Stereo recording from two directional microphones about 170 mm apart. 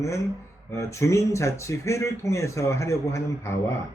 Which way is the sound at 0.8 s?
15° left (ahead or behind).